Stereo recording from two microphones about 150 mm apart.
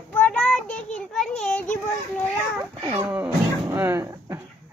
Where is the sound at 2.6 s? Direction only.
20° right (ahead or behind).